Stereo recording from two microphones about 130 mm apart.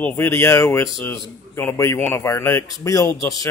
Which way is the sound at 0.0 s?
15° left (ahead or behind).